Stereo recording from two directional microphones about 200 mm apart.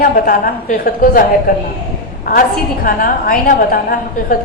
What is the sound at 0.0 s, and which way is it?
A woman's voice, 45° left (ahead or behind).